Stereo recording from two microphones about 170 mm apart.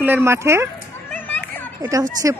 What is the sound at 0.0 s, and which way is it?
Speech, 15° right (ahead or behind).